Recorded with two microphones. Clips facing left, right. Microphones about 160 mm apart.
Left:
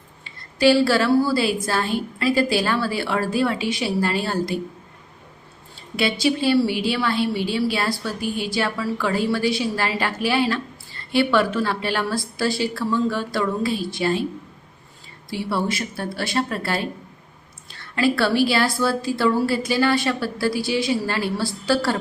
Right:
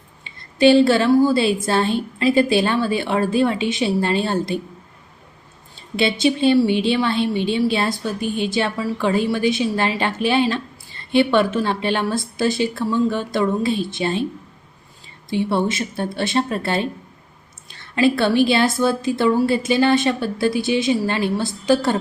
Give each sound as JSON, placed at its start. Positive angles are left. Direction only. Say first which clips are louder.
{"t": 0.3, "sound": "a woman's voice", "louder": "right 3 dB", "side_deg": -20}
{"t": 6.0, "sound": "a woman's voice", "louder": "right 3 dB", "side_deg": -25}
{"t": 15.3, "sound": "a woman's voice", "louder": "right 4 dB", "side_deg": -20}